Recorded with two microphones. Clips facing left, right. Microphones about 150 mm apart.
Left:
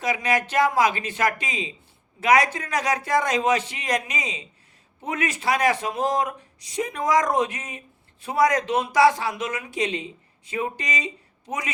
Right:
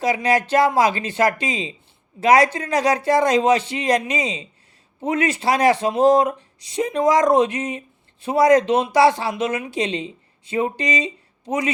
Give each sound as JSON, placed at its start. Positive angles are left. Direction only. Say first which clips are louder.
{"t": 0.0, "sound": "speech", "louder": "right 5 dB", "side_deg": -30}